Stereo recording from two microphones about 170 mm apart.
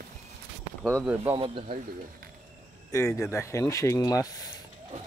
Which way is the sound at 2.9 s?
15° left (ahead or behind).